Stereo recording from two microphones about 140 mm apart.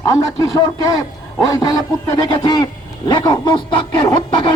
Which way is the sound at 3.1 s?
30° left (ahead or behind).